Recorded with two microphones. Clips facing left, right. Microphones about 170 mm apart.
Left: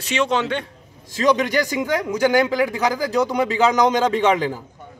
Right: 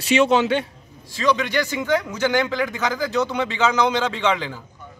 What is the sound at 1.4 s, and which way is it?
Speech, 40° left (ahead or behind).